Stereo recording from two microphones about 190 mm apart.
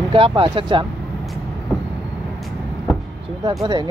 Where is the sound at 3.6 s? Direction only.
25° right (ahead or behind).